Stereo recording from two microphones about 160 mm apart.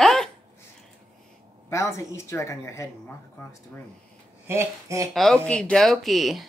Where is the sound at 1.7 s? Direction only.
20° left (ahead or behind).